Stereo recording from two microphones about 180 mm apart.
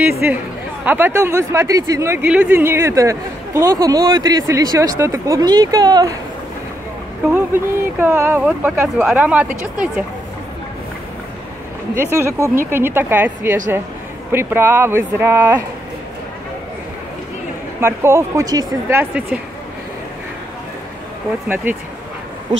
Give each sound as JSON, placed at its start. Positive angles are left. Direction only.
{"t": 0.0, "sound": "speech", "side_deg": -10}
{"t": 7.3, "sound": "speech", "side_deg": -15}
{"t": 11.9, "sound": "speech", "side_deg": -15}
{"t": 17.7, "sound": "speech", "side_deg": -15}
{"t": 21.7, "sound": "speech", "side_deg": -10}